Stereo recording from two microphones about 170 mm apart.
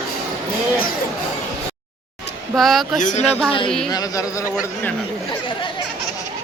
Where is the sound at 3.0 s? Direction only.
40° left (ahead or behind).